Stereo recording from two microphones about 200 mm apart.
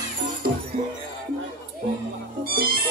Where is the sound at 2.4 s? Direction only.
50° right (ahead or behind).